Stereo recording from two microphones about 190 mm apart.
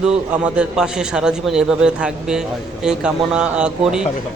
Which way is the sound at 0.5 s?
5° right (ahead or behind).